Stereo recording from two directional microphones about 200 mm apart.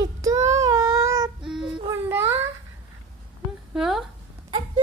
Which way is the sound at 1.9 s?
10° right (ahead or behind).